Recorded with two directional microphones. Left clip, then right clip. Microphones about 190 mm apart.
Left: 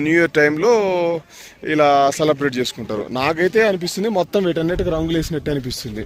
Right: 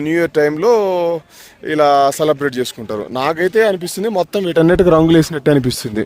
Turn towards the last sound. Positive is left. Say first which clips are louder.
# right 9 dB
turn(degrees=-60)  # may be behind; listen again after turning